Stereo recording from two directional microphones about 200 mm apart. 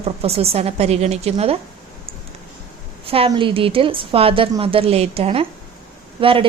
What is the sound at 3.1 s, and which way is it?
A woman's voice, 25° right (ahead or behind).